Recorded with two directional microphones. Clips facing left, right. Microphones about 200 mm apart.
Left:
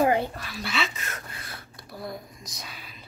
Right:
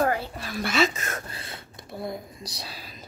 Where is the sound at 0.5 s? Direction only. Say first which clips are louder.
Right 7 dB; 45° right (ahead or behind).